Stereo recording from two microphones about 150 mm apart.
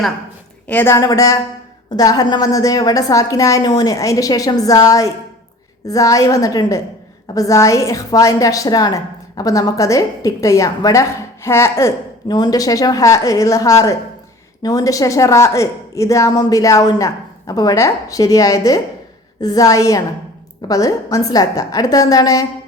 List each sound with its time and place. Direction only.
0.7 s speech: 10° left (ahead or behind)
0.9 s a woman's voice: 20° left (ahead or behind)